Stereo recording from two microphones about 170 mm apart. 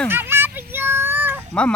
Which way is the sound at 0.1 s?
15° right (ahead or behind).